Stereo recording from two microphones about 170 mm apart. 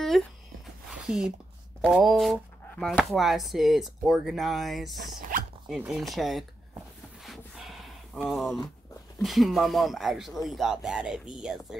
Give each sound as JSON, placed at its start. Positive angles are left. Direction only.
{"t": 0.1, "sound": "speech", "side_deg": 0}
{"t": 0.8, "sound": "a sound", "side_deg": -5}
{"t": 1.8, "sound": "speech", "side_deg": 0}
{"t": 5.3, "sound": "dog", "side_deg": -50}
{"t": 5.7, "sound": "speech", "side_deg": -5}
{"t": 7.2, "sound": "a sound", "side_deg": 0}
{"t": 8.3, "sound": "speech", "side_deg": 0}